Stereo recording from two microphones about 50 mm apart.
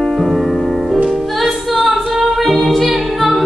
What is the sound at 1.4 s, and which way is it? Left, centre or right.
A capella, centre.